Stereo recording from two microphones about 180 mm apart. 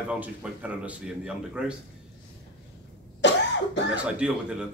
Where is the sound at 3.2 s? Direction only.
75° left (ahead or behind).